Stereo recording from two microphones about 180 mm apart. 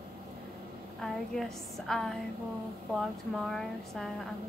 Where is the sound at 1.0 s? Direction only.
Centre (ahead or behind).